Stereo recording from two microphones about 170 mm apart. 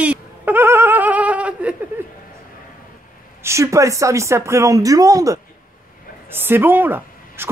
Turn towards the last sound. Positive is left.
turn(degrees=-10)  # may be behind; listen again after turning